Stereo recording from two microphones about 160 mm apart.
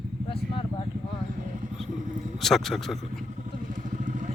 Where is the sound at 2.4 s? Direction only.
Centre (ahead or behind).